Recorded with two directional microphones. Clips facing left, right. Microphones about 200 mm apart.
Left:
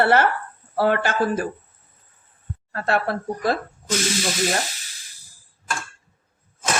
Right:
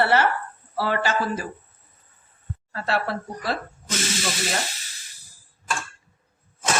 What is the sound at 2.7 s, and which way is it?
Speech, 50° left (ahead or behind).